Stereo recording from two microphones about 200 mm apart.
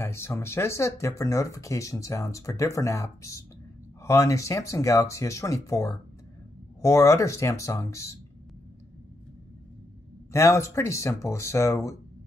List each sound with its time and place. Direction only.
0.0 s speech: 10° left (ahead or behind)
10.3 s speech: 15° left (ahead or behind)